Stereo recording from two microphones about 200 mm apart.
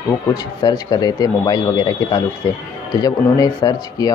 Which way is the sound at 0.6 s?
20° left (ahead or behind).